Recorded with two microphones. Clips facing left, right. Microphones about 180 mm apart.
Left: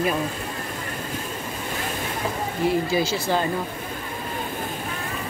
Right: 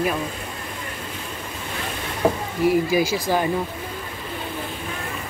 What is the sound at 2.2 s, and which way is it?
Speech, 60° right (ahead or behind).